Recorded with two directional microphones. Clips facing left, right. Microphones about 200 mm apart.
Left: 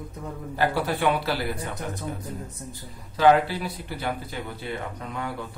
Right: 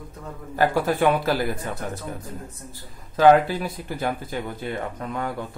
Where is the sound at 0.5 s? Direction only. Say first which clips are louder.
Right 4 dB; 45° right (ahead or behind).